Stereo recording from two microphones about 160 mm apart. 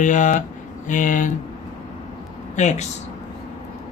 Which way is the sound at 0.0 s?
55° left (ahead or behind).